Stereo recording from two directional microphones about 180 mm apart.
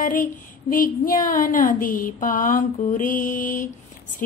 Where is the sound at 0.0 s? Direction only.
50° left (ahead or behind).